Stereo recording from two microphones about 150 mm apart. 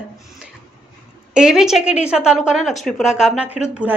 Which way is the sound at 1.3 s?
5° right (ahead or behind).